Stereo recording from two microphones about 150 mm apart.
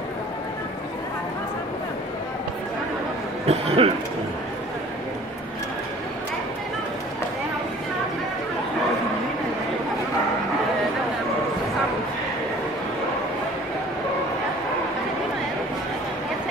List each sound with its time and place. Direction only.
3.4 s speech: 45° right (ahead or behind)